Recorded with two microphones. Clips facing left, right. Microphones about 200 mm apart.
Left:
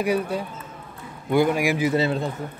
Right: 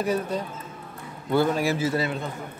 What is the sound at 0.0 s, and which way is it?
A man's voice, 10° left (ahead or behind).